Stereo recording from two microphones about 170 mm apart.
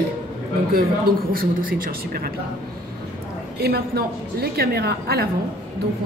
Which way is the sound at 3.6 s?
65° right (ahead or behind).